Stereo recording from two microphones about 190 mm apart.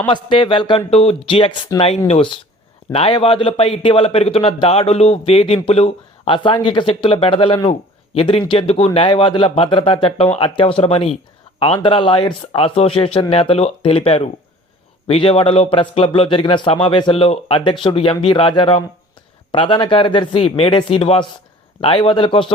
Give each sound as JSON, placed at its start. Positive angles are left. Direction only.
{"t": 0.1, "sound": "a man's voice", "side_deg": 25}